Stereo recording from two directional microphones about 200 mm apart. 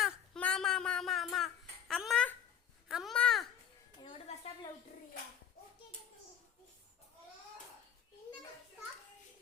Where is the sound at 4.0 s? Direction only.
30° left (ahead or behind).